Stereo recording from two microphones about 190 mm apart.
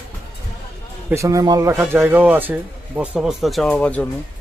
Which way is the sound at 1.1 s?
15° right (ahead or behind).